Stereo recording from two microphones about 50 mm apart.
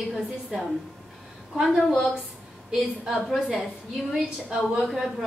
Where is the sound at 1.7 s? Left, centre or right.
Centre.